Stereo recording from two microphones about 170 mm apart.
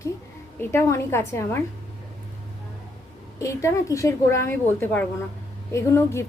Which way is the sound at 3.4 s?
15° left (ahead or behind).